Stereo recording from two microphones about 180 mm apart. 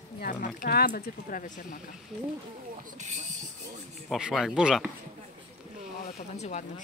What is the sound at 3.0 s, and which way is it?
Speech, 40° right (ahead or behind).